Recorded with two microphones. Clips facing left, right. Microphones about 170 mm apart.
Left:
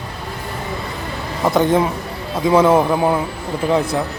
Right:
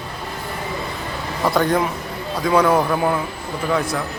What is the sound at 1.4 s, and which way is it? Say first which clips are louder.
Speech: left 3 dB; 20° left (ahead or behind).